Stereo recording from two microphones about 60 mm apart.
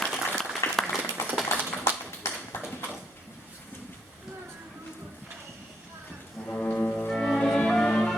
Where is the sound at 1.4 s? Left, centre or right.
Left.